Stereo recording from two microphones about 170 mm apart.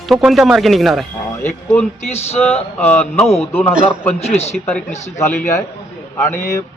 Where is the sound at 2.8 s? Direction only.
10° left (ahead or behind).